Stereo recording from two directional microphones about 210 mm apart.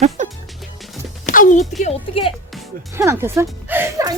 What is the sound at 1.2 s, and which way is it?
Music, 40° left (ahead or behind).